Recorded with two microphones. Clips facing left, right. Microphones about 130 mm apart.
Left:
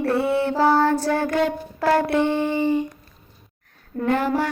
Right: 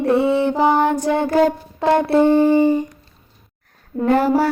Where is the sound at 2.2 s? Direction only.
40° right (ahead or behind).